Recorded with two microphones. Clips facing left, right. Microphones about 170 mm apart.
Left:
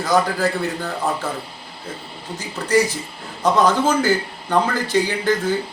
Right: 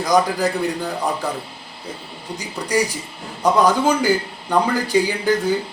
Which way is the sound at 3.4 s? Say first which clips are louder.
Right 1 dB; 10° right (ahead or behind).